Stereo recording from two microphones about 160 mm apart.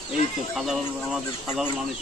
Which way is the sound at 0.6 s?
Centre (ahead or behind).